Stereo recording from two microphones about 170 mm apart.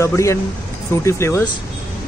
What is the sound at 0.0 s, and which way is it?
Speech, 15° left (ahead or behind).